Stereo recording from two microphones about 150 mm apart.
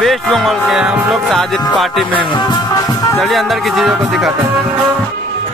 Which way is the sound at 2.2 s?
30° left (ahead or behind).